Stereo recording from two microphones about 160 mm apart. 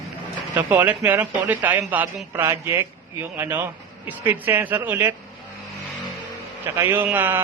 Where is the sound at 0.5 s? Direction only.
10° right (ahead or behind).